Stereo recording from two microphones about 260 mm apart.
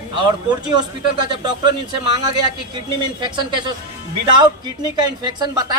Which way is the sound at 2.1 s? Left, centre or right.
Centre.